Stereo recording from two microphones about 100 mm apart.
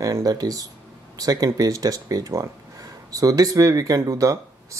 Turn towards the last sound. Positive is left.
turn(degrees=-35)  # may be behind; listen again after turning